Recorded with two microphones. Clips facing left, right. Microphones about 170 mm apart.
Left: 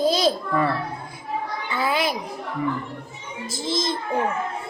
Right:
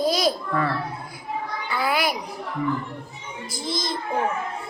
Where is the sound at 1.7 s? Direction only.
25° left (ahead or behind).